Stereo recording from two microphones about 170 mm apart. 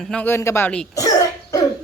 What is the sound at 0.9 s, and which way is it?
Cough, 20° left (ahead or behind).